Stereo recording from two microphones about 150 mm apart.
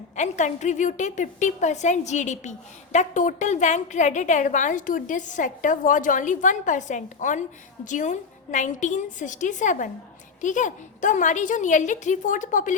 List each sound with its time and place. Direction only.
0.2 s a woman's voice: 50° left (ahead or behind)